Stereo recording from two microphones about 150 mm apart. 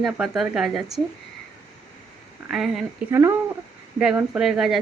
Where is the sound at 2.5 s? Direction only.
Centre (ahead or behind).